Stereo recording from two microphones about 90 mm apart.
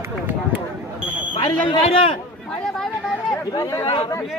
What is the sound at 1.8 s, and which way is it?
Speech, 90° left.